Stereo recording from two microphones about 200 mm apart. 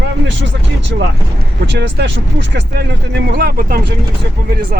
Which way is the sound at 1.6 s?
60° right (ahead or behind).